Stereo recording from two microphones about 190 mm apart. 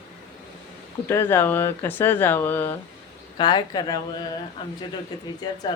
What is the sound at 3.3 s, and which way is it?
Speech, 25° left (ahead or behind).